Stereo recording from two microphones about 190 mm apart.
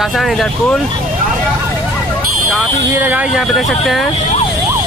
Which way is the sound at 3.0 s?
10° right (ahead or behind).